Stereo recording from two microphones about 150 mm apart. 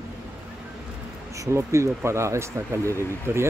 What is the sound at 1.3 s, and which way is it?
Speech, 20° right (ahead or behind).